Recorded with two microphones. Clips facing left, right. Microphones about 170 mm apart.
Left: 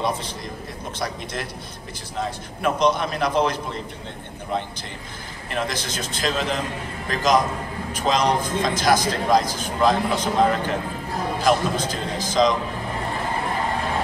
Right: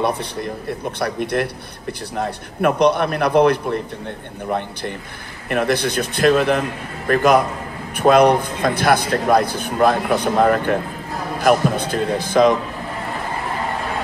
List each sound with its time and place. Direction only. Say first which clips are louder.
0.0 s a man's voice: right 5 dB; 60° right (ahead or behind)